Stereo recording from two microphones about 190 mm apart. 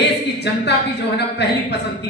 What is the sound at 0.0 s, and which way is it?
A woman's voice, 65° left (ahead or behind).